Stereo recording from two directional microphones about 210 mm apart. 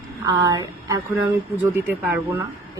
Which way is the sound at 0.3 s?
15° right (ahead or behind).